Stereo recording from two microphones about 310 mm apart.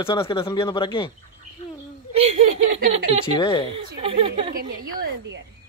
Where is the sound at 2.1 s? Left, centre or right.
Centre.